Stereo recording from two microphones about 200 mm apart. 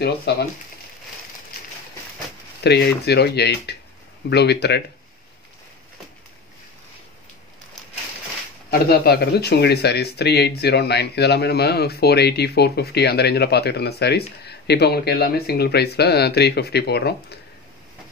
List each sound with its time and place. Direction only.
0.0 s speech: 50° left (ahead or behind)
2.6 s speech: 55° left (ahead or behind)
8.6 s speech: 50° left (ahead or behind)